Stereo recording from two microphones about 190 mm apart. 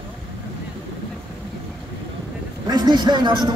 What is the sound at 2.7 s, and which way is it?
Speech, 20° right (ahead or behind).